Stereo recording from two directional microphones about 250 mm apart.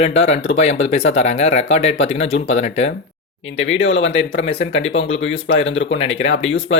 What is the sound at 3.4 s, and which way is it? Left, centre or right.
Speech, left.